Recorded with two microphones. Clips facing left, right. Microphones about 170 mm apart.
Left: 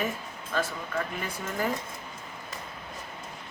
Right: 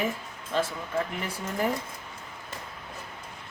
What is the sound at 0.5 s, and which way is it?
Speech, 25° right (ahead or behind).